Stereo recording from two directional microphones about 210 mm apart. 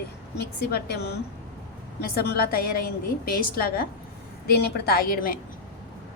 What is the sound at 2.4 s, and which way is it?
A woman's voice, 45° left (ahead or behind).